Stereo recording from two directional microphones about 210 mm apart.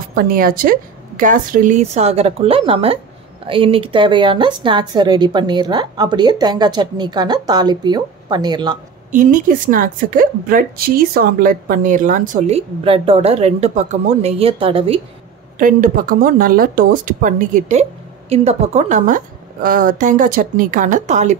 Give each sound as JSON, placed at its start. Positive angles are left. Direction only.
{"t": 0.1, "sound": "a woman's voice", "side_deg": -45}
{"t": 9.1, "sound": "a woman's voice", "side_deg": -40}
{"t": 15.6, "sound": "a woman's voice", "side_deg": -40}